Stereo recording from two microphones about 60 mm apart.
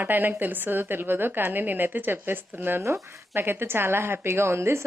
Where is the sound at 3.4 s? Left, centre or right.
Right.